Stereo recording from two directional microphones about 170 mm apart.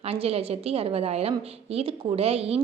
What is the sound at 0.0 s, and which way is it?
A woman's voice, 35° right (ahead or behind).